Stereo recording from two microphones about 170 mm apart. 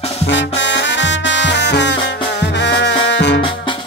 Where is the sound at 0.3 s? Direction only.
90° left.